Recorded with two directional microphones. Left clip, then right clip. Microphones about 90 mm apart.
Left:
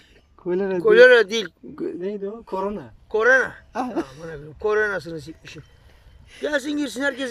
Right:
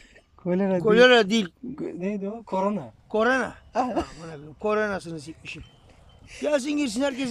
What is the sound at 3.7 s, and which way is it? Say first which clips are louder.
Speech: right 1 dB; 40° right (ahead or behind).